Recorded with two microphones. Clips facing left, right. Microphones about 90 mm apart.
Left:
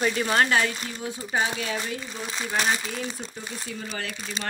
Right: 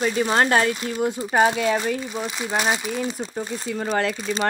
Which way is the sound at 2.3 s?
15° right (ahead or behind).